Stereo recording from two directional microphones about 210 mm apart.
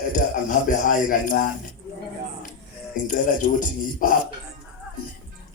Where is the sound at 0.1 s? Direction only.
35° left (ahead or behind).